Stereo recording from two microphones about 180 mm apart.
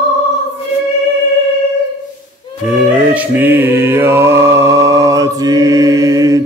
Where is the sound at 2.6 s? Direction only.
10° right (ahead or behind).